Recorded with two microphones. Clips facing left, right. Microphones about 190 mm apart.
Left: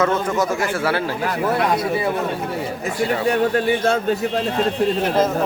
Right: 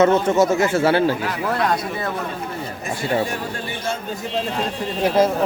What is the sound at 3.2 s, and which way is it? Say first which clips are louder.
Speech: left 11 dB; 70° left (ahead or behind).